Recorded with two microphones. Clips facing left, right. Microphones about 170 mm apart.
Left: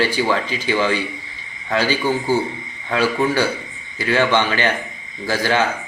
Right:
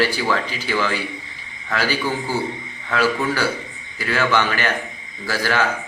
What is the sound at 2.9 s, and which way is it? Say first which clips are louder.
Speech: left 2 dB; 20° left (ahead or behind).